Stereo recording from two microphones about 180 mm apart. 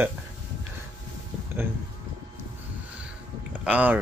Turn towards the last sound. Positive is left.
turn(degrees=-10)  # may be behind; listen again after turning